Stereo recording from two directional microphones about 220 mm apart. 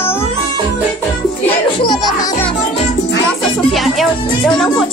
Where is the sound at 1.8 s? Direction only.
20° left (ahead or behind).